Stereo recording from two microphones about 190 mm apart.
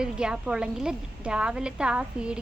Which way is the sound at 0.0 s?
5° right (ahead or behind).